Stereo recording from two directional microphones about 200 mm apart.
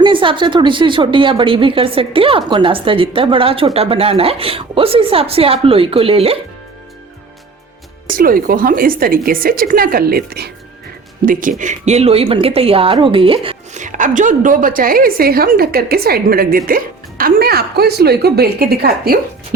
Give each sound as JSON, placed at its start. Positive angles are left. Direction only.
{"t": 0.0, "sound": "a woman's voice", "side_deg": -25}
{"t": 8.1, "sound": "speech", "side_deg": -45}